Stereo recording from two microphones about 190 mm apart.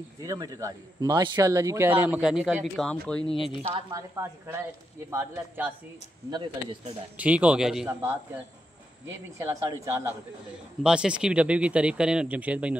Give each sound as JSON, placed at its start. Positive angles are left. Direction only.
{"t": 0.2, "sound": "a man's voice", "side_deg": -20}
{"t": 3.9, "sound": "a man's voice", "side_deg": -15}
{"t": 6.3, "sound": "speech", "side_deg": -25}
{"t": 7.2, "sound": "a man's voice", "side_deg": -5}
{"t": 9.0, "sound": "a man's voice", "side_deg": -15}